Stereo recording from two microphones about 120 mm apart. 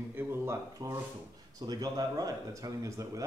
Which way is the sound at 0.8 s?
35° right (ahead or behind).